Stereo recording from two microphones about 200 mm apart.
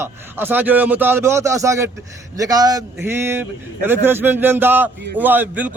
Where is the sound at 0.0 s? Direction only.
10° right (ahead or behind).